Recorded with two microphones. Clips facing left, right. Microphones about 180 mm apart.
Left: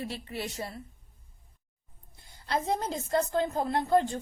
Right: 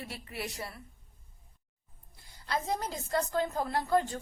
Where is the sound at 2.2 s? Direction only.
25° left (ahead or behind).